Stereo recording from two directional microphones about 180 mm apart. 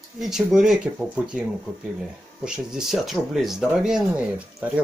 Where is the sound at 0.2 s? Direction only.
Centre (ahead or behind).